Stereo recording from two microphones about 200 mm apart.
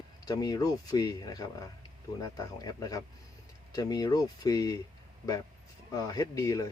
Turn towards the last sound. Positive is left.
turn(degrees=15)  # may be behind; listen again after turning